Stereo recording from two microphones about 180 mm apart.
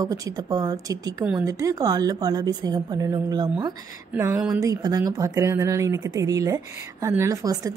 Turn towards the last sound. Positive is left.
turn(degrees=-20)  # may be behind; listen again after turning